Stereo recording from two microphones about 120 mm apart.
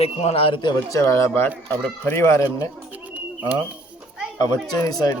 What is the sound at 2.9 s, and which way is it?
Bird, 15° right (ahead or behind).